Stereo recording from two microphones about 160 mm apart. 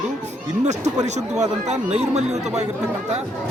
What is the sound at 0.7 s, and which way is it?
Speech, 45° right (ahead or behind).